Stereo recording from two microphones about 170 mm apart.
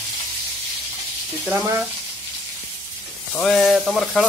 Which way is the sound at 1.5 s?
10° right (ahead or behind).